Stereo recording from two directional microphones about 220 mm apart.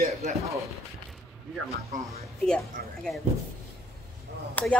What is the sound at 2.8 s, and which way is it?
Speech, 45° right (ahead or behind).